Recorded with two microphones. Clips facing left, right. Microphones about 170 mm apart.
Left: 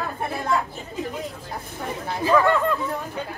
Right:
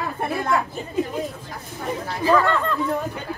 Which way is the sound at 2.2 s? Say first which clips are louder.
Left 1 dB; 15° left (ahead or behind).